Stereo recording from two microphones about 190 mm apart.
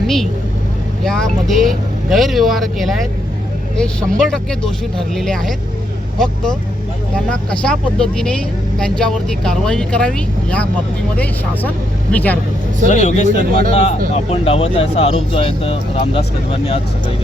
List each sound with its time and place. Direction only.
1.0 s speech: centre (ahead or behind)
12.1 s a man's voice: 10° left (ahead or behind)
12.9 s speech: 40° left (ahead or behind)
13.3 s a man's voice: 50° right (ahead or behind)
14.1 s speech: 30° left (ahead or behind)